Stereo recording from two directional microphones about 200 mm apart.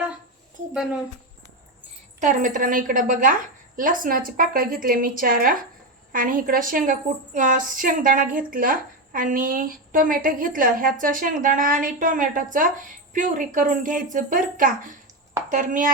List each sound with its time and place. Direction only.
0.7 s a woman's voice: centre (ahead or behind)
2.2 s a woman's voice: 40° right (ahead or behind)